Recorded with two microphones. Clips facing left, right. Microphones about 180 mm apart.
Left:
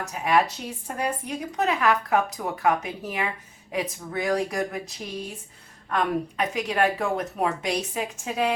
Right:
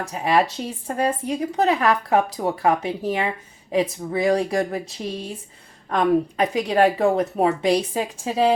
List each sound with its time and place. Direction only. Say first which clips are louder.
0.0 s speech: right 3 dB; 30° right (ahead or behind)